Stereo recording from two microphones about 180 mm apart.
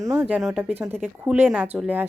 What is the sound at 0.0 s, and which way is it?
Speech, 15° right (ahead or behind).